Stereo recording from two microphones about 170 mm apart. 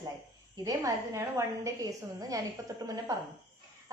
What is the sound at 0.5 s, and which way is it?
A woman's voice, 20° right (ahead or behind).